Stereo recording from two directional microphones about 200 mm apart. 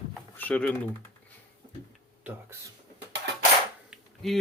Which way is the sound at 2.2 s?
10° right (ahead or behind).